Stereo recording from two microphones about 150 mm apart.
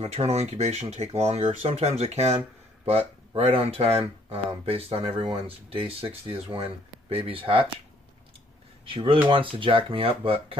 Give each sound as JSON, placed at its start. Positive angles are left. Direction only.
{"t": 0.0, "sound": "speech", "side_deg": -45}
{"t": 8.8, "sound": "speech", "side_deg": -35}